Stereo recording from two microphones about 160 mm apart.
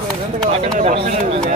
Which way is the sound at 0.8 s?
45° right (ahead or behind).